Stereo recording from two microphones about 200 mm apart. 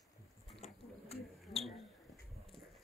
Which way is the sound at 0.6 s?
30° left (ahead or behind).